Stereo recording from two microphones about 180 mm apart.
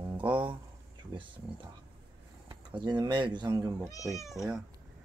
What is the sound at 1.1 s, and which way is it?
Speech, 25° right (ahead or behind).